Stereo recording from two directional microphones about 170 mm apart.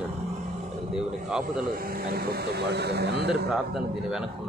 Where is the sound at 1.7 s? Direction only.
60° right (ahead or behind); by 3.5 s 75° right (ahead or behind).